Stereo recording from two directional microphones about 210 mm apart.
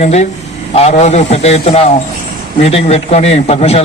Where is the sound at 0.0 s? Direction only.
30° left (ahead or behind).